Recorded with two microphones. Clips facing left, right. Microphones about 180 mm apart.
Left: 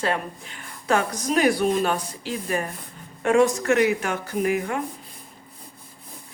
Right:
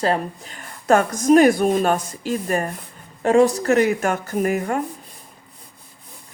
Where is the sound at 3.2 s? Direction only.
35° right (ahead or behind).